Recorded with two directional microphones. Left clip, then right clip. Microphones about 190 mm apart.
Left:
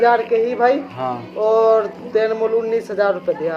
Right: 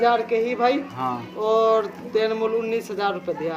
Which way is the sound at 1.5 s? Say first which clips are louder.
Left 4 dB; 40° right (ahead or behind).